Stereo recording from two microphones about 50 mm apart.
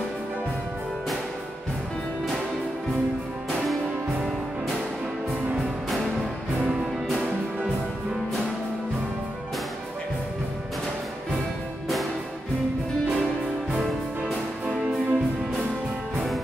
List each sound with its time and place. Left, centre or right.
14.7 s music: right